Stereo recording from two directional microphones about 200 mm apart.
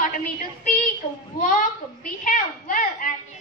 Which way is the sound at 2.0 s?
40° left (ahead or behind).